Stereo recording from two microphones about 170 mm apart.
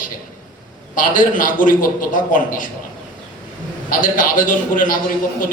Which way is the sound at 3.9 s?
50° left (ahead or behind).